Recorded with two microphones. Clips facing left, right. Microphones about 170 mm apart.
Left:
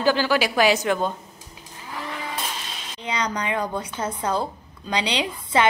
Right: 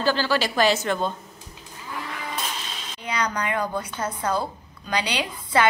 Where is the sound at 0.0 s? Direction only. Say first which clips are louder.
Left 2 dB; 15° left (ahead or behind).